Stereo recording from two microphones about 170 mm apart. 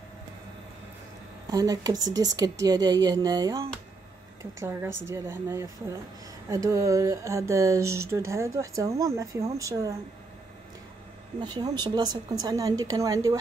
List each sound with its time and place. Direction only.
1.5 s speech: 20° right (ahead or behind)
11.3 s speech: 25° right (ahead or behind)